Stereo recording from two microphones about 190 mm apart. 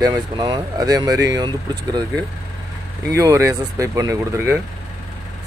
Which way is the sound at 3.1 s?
15° right (ahead or behind).